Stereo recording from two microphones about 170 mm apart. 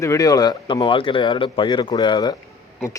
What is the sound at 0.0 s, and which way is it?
Speech, 20° left (ahead or behind).